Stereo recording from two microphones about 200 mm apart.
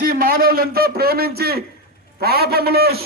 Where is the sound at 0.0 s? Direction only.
45° right (ahead or behind).